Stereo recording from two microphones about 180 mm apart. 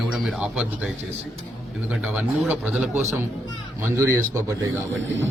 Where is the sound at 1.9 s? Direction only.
5° right (ahead or behind).